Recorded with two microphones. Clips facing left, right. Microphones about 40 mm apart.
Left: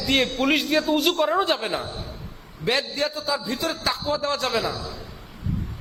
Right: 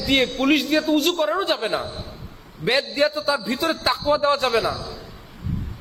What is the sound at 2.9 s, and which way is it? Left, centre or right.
A man's voice, right.